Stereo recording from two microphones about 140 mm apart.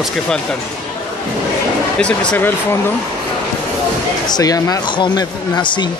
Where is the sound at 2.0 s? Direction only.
10° left (ahead or behind).